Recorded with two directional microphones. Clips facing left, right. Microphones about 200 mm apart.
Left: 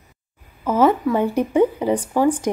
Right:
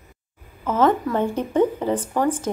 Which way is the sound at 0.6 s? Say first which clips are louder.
Left 2 dB; 10° left (ahead or behind).